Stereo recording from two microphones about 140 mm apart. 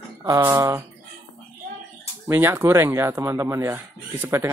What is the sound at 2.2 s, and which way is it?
Speech, 15° right (ahead or behind).